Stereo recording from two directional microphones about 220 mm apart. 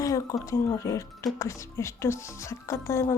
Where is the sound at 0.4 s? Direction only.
15° left (ahead or behind).